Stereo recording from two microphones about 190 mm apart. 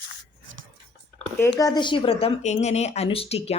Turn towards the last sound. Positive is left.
turn(degrees=30)  # may be behind; listen again after turning